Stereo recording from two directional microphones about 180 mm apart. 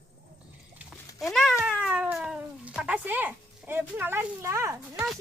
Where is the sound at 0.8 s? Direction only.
Centre (ahead or behind); by 5.0 s 15° right (ahead or behind).